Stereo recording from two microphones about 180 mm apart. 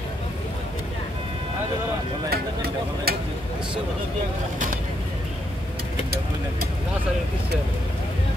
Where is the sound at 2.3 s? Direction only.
60° right (ahead or behind).